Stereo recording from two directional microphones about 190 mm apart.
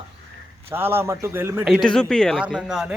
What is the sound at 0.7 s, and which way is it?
A man's voice, 10° right (ahead or behind).